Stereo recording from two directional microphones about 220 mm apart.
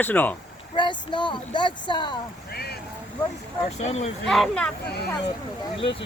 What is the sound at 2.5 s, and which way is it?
Vehicle, 45° left (ahead or behind).